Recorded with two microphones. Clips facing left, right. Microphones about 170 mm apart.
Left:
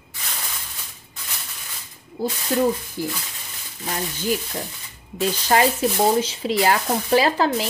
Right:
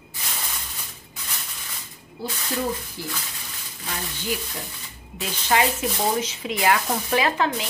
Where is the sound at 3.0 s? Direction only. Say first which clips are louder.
Left 7 dB; 50° left (ahead or behind).